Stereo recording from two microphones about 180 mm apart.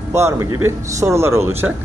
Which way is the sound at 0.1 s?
15° right (ahead or behind).